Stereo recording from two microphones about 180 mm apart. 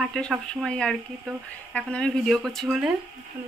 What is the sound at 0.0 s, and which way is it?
Speech, centre (ahead or behind).